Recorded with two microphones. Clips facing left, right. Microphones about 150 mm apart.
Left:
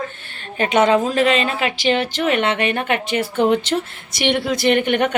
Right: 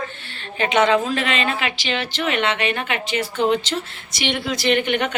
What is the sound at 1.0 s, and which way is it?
Speech, 40° left (ahead or behind).